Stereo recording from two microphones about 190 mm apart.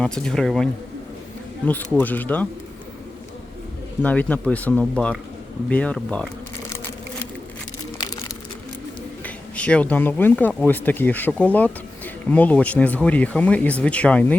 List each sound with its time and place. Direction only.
0.0 s speech: 5° left (ahead or behind)
4.0 s speech: 10° left (ahead or behind)
7.9 s a sound: 20° left (ahead or behind)
9.2 s speech: 5° left (ahead or behind)